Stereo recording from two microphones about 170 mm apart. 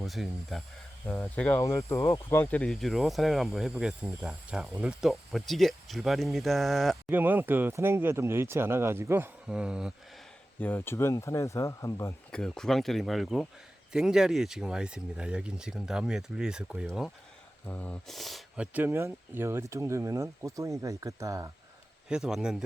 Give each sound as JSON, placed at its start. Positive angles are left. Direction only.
{"t": 0.0, "sound": "speech", "side_deg": 0}
{"t": 1.0, "sound": "speech", "side_deg": 10}
{"t": 7.1, "sound": "speech", "side_deg": -10}
{"t": 10.6, "sound": "speech", "side_deg": 10}
{"t": 12.3, "sound": "speech", "side_deg": 5}
{"t": 17.7, "sound": "speech", "side_deg": 10}
{"t": 22.1, "sound": "speech", "side_deg": -5}